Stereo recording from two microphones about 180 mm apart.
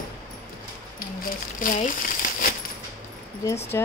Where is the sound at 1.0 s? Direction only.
50° left (ahead or behind).